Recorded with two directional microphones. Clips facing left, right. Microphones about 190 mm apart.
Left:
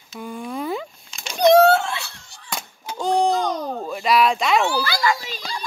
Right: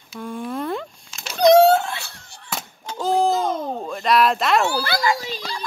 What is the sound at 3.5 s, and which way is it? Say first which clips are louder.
Speech: right 1 dB; 25° right (ahead or behind).